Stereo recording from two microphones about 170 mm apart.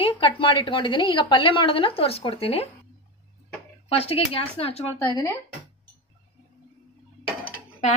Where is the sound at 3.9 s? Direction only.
35° left (ahead or behind).